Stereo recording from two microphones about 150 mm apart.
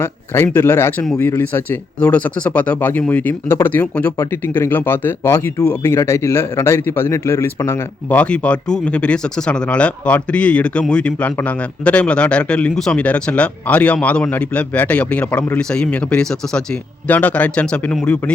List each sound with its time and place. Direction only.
0.0 s a man's voice: 15° left (ahead or behind)